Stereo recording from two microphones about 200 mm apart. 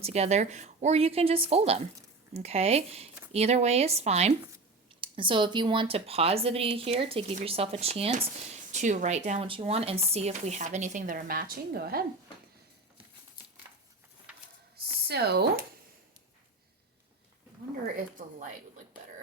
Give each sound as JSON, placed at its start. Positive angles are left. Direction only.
{"t": 0.0, "sound": "speech", "side_deg": -35}
{"t": 15.0, "sound": "speech", "side_deg": -55}